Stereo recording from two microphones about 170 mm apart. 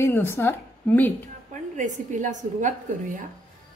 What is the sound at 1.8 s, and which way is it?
Speech, 45° right (ahead or behind).